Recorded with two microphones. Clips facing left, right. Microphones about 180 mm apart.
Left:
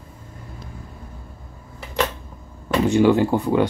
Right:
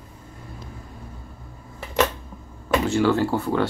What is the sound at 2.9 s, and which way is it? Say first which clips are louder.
Speech: left 6 dB; 15° left (ahead or behind).